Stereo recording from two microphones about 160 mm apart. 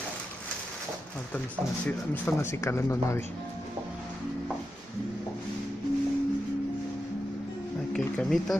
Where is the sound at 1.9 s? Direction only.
15° left (ahead or behind).